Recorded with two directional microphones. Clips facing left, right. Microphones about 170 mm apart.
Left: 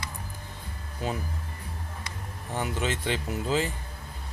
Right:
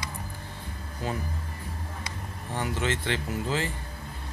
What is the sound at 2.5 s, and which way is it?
Speech, 15° left (ahead or behind).